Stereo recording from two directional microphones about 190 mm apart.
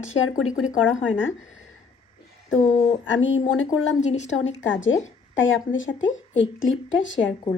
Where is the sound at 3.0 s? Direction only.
80° left.